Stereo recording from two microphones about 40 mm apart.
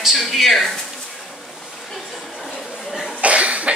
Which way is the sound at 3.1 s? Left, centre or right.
Right.